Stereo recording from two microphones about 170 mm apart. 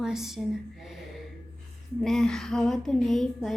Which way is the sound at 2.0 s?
Centre (ahead or behind).